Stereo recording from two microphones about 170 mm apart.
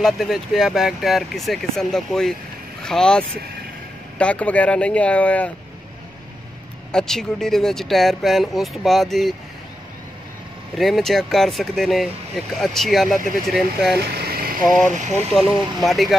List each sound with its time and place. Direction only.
0.0 s speech: centre (ahead or behind)
6.9 s speech: 5° left (ahead or behind)
10.8 s speech: centre (ahead or behind)
13.9 s vehicle: 65° right (ahead or behind)
15.3 s speech: centre (ahead or behind)